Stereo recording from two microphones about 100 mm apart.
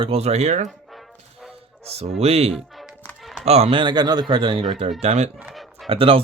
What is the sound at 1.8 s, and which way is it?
Speech, 90° right.